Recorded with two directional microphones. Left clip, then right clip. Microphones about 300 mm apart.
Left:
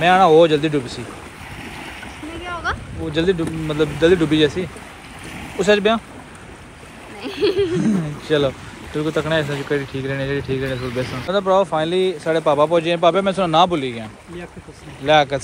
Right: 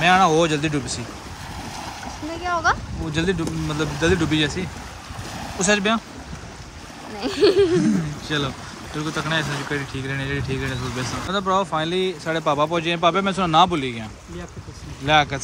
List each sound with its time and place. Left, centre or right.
0.0 s speech: centre
2.4 s a sound: right
3.1 s speech: centre
7.2 s splash: right
7.8 s a sound: centre
9.0 s speech: centre
15.0 s speech: centre